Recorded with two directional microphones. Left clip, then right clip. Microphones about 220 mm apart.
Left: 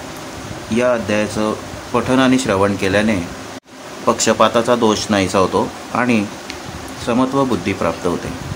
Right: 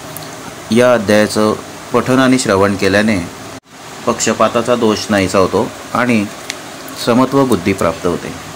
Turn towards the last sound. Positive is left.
turn(degrees=-20)  # may be behind; listen again after turning